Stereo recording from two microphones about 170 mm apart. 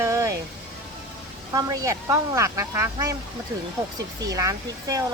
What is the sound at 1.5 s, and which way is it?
Speech, 20° right (ahead or behind).